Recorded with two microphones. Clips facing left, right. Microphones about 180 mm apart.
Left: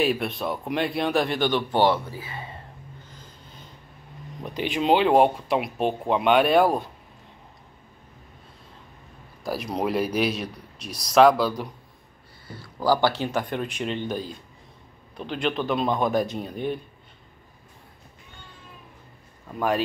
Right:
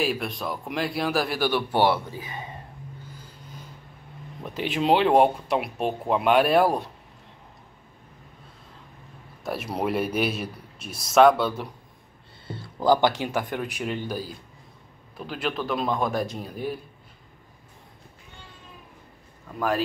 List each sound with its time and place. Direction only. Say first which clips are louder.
0.0 s speech: left 3 dB; centre (ahead or behind); by 2.5 s 15° right (ahead or behind)
3.1 s vehicle: right 3 dB; 10° right (ahead or behind)
4.4 s speech: even; centre (ahead or behind)
9.4 s speech: left 1 dB; 5° right (ahead or behind)
10.9 s speech: left 1 dB; 25° right (ahead or behind)
11.1 s speech: even; centre (ahead or behind)
12.4 s speech: right 2 dB; 25° right (ahead or behind); by 16.8 s 5° right (ahead or behind)